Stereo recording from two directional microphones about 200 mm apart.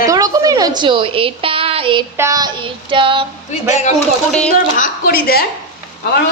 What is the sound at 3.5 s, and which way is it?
Speech, 35° left (ahead or behind).